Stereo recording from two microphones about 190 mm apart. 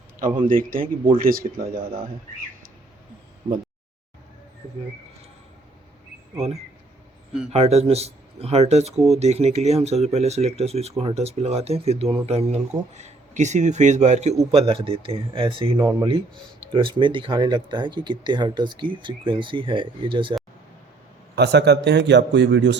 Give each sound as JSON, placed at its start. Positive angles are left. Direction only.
{"t": 0.3, "sound": "speech", "side_deg": -25}
{"t": 0.5, "sound": "speech", "side_deg": -45}
{"t": 3.4, "sound": "a sound", "side_deg": -15}
{"t": 7.5, "sound": "speech", "side_deg": -35}
{"t": 21.3, "sound": "a man's voice", "side_deg": -60}